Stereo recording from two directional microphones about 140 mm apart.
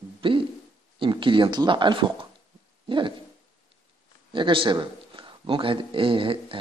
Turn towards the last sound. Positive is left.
turn(degrees=-40)  # may be behind; listen again after turning